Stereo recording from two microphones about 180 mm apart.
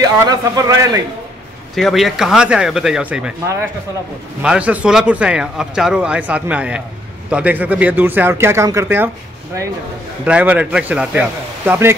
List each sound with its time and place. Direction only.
0.0 s a man's voice: 20° right (ahead or behind)
1.8 s speech: centre (ahead or behind)
4.4 s speech: 5° right (ahead or behind)
10.2 s speech: 10° right (ahead or behind)